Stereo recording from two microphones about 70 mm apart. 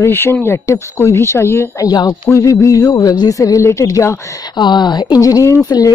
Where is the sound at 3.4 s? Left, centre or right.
Left.